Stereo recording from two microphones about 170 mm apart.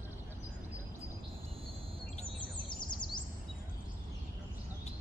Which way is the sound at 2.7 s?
25° left (ahead or behind).